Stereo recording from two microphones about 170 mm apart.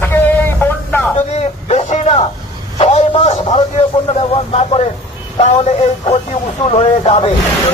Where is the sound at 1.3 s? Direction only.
40° left (ahead or behind).